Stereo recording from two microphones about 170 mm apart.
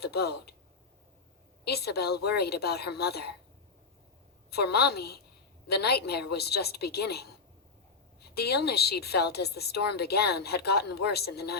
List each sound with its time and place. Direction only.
0.0 s speech: 70° left (ahead or behind)
1.6 s a woman's voice: 70° left (ahead or behind)
4.5 s a woman's voice: 70° left (ahead or behind)